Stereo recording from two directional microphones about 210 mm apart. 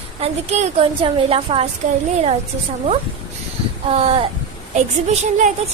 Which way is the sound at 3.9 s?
30° right (ahead or behind).